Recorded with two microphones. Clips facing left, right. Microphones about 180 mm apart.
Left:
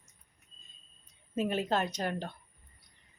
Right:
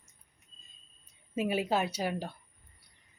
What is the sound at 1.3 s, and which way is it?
A woman's voice, 10° right (ahead or behind).